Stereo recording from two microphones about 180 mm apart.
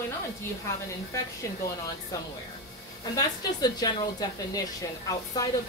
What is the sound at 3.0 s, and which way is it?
A woman's voice, 20° left (ahead or behind).